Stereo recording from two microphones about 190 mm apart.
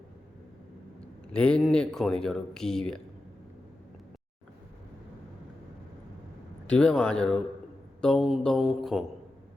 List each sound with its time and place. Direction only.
1.3 s speech: 5° left (ahead or behind)
6.7 s speech: 5° left (ahead or behind)